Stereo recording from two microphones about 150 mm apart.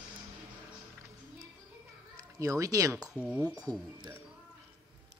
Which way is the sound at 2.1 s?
20° right (ahead or behind).